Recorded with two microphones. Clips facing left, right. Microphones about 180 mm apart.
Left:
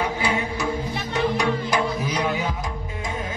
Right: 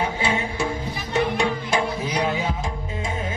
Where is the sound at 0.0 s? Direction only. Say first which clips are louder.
Even; 25° right (ahead or behind).